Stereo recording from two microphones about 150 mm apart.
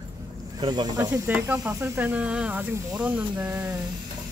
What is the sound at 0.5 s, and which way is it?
Speech, 25° right (ahead or behind).